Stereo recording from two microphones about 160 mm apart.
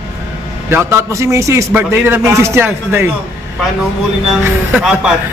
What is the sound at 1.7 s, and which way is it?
Speech, 10° right (ahead or behind).